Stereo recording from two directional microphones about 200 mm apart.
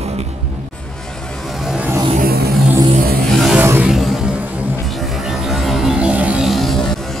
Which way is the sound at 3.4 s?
5° right (ahead or behind).